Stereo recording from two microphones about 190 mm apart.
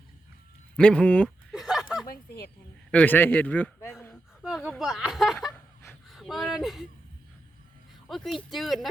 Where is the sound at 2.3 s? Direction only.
55° left (ahead or behind).